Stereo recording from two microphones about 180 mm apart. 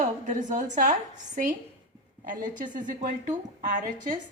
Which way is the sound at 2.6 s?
45° right (ahead or behind).